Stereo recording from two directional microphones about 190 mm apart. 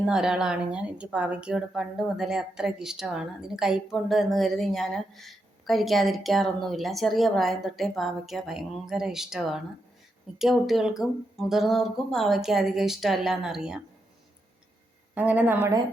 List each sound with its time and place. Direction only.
0.0 s a woman's voice: 5° right (ahead or behind)
15.1 s speech: 10° right (ahead or behind)